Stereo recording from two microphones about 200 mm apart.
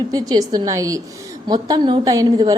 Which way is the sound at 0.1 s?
20° right (ahead or behind).